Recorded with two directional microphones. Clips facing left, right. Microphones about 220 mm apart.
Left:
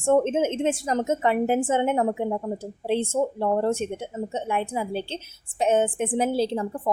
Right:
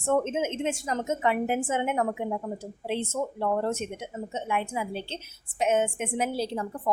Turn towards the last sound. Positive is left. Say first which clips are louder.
# left 5 dB
turn(degrees=30)  # may be behind; listen again after turning